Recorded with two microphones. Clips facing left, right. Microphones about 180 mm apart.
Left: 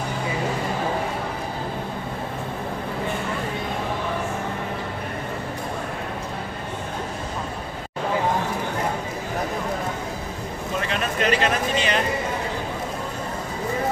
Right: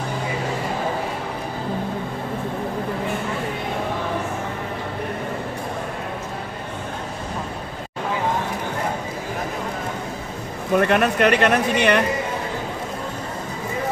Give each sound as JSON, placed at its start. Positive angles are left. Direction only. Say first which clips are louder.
{"t": 10.7, "sound": "speech", "louder": "right 10 dB", "side_deg": -60}